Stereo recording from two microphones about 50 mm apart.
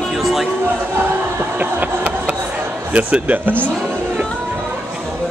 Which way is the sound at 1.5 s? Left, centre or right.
Right.